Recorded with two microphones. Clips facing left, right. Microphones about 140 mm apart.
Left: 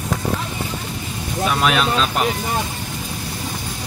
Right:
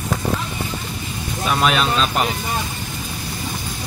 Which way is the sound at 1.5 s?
Centre (ahead or behind).